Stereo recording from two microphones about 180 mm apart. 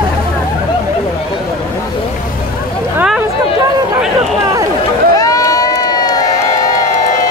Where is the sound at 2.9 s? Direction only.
5° right (ahead or behind).